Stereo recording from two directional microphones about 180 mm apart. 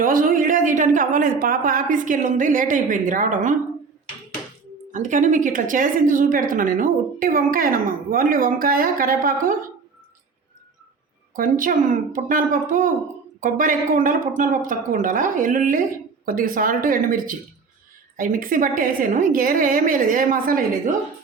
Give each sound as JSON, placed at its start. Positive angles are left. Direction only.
{"t": 0.0, "sound": "a woman's voice", "side_deg": -50}
{"t": 4.9, "sound": "a woman's voice", "side_deg": -45}
{"t": 11.3, "sound": "a woman's voice", "side_deg": -50}